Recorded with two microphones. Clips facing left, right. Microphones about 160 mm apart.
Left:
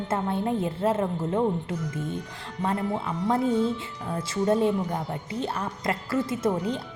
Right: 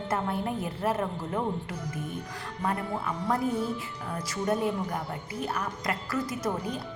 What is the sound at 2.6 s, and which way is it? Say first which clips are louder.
Speech: left 4 dB; 25° left (ahead or behind).